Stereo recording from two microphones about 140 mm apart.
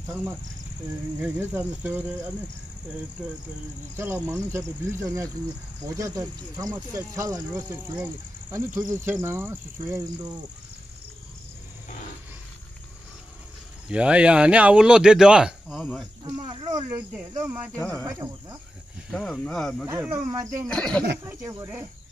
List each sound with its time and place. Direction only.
0.1 s speech: 15° right (ahead or behind)
3.9 s speech: 20° right (ahead or behind)
13.8 s speech: 5° right (ahead or behind)
16.4 s speech: 40° right (ahead or behind)
16.7 s speech: 25° right (ahead or behind)
17.4 s speech: 10° right (ahead or behind)
18.0 s speech: 25° right (ahead or behind)
19.1 s speech: 5° left (ahead or behind)
19.9 s speech: 20° right (ahead or behind)
20.6 s speech: 5° left (ahead or behind)